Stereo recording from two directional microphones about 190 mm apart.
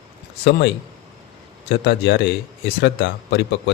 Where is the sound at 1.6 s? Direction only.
65° left (ahead or behind).